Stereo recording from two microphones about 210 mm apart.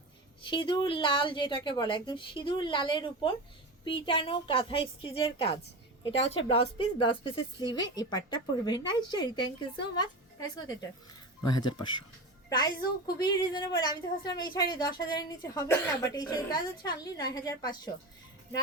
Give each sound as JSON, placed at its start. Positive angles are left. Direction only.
{"t": 0.4, "sound": "a woman's voice", "side_deg": 25}